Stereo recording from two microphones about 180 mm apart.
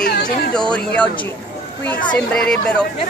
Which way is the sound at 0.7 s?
5° left (ahead or behind).